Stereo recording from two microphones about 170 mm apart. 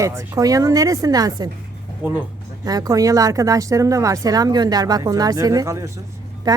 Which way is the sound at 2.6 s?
20° right (ahead or behind).